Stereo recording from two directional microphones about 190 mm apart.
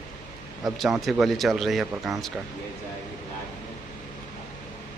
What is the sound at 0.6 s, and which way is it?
A man's voice, centre (ahead or behind).